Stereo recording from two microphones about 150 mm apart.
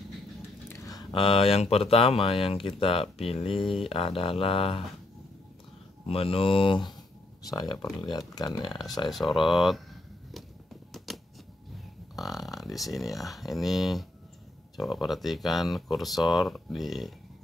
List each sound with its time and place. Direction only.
0.7 s speech: 20° left (ahead or behind); by 4.8 s 35° left (ahead or behind)
6.0 s speech: 40° left (ahead or behind)
9.1 s speech: centre (ahead or behind)
11.1 s typewriter: centre (ahead or behind)
12.2 s speech: centre (ahead or behind)